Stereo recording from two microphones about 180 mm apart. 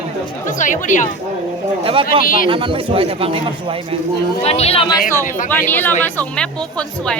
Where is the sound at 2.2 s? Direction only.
50° left (ahead or behind).